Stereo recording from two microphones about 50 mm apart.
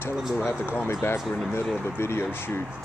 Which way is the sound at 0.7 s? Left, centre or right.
Left.